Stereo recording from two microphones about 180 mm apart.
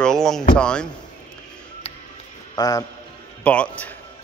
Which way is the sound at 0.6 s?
5° left (ahead or behind).